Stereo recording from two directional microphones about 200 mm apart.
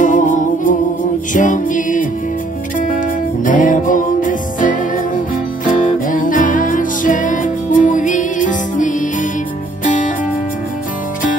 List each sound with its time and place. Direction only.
0.0 s music: 40° left (ahead or behind)
3.4 s music: 40° left (ahead or behind)